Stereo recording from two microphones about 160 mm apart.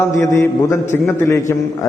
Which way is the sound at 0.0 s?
15° left (ahead or behind).